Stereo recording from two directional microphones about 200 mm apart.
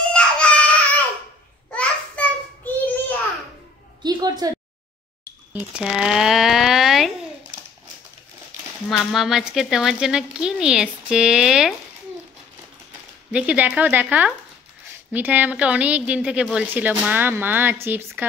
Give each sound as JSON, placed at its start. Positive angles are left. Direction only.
{"t": 0.1, "sound": "baby cry", "side_deg": 5}
{"t": 1.8, "sound": "a sound", "side_deg": 10}
{"t": 4.0, "sound": "a sound", "side_deg": -20}
{"t": 5.5, "sound": "speech", "side_deg": -5}
{"t": 8.8, "sound": "a woman's voice", "side_deg": 0}
{"t": 13.3, "sound": "a woman's voice", "side_deg": -5}